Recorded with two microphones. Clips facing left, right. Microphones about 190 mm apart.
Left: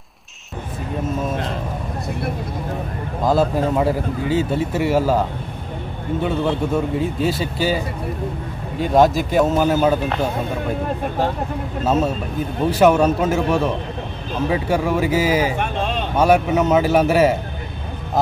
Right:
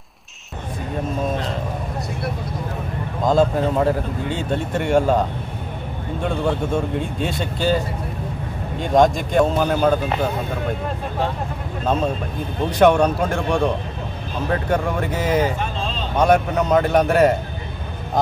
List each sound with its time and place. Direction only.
3.3 s a man's voice: 5° left (ahead or behind)
7.0 s a man's voice: 5° left (ahead or behind)
11.8 s a man's voice: 5° left (ahead or behind)
15.6 s a sound: 65° left (ahead or behind)
16.2 s a man's voice: 5° left (ahead or behind)